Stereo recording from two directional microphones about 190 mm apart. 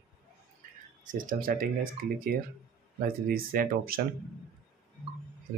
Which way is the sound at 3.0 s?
50° right (ahead or behind).